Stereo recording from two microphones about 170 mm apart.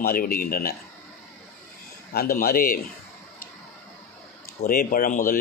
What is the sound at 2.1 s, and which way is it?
Speech, 55° left (ahead or behind).